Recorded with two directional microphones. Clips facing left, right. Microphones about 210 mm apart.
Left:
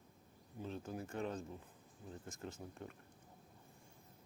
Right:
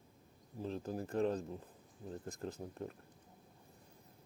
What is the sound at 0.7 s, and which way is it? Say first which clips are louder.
Speech: right 5 dB; 35° right (ahead or behind).